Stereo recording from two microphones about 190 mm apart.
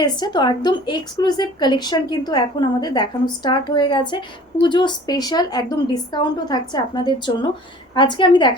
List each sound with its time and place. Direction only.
0.0 s a woman's voice: 20° left (ahead or behind)